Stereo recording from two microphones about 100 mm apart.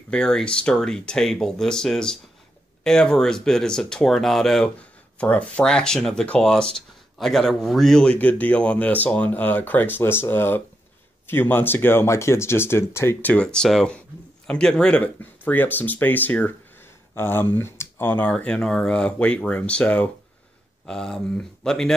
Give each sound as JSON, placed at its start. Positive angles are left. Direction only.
{"t": 0.1, "sound": "speech", "side_deg": 10}
{"t": 5.2, "sound": "speech", "side_deg": 15}